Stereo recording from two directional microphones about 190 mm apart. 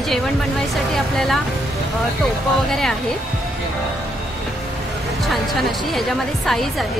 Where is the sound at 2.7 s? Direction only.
Centre (ahead or behind).